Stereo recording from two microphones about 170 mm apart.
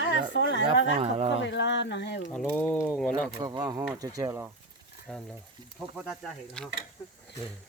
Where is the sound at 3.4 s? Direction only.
20° right (ahead or behind).